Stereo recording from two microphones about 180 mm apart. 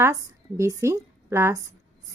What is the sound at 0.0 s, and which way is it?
A woman's voice, 15° right (ahead or behind).